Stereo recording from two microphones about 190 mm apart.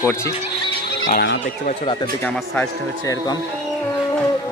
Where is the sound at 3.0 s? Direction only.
15° left (ahead or behind).